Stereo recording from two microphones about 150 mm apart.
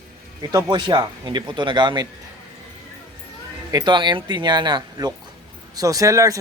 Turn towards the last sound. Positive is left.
turn(degrees=-20)  # may be behind; listen again after turning